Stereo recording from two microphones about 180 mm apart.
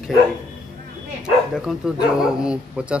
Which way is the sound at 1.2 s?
5° right (ahead or behind).